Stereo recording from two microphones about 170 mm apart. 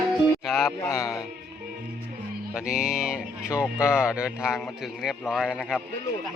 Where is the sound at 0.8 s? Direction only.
20° left (ahead or behind).